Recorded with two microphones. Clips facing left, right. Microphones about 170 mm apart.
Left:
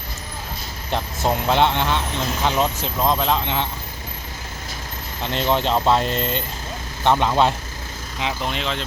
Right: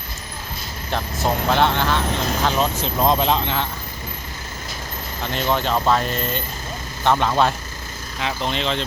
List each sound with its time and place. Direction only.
0.9 s speech: 20° left (ahead or behind)
3.0 s speech: 15° right (ahead or behind)
3.4 s speech: 20° left (ahead or behind)
5.2 s speech: 25° left (ahead or behind); by 8.8 s 5° left (ahead or behind)